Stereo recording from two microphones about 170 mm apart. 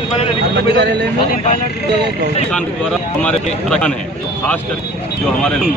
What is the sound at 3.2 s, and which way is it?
Speech, 5° left (ahead or behind).